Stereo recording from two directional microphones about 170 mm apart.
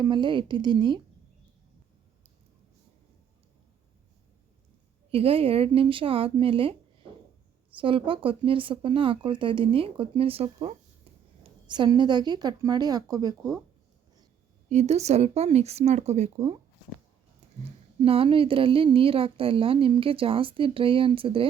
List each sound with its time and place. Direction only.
0.0 s a woman's voice: 25° right (ahead or behind)
5.1 s a woman's voice: 35° right (ahead or behind)
11.4 s a woman's voice: 25° right (ahead or behind)
14.7 s a woman's voice: 40° right (ahead or behind)
17.4 s a sound: 40° right (ahead or behind)
18.0 s a woman's voice: 35° right (ahead or behind)